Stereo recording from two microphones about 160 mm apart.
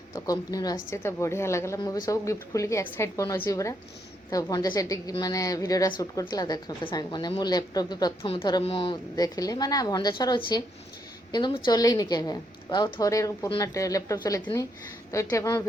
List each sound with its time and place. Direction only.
0.1 s a woman's voice: 20° left (ahead or behind)